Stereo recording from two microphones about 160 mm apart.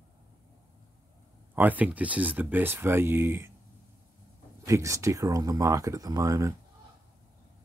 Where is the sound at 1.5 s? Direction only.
10° right (ahead or behind).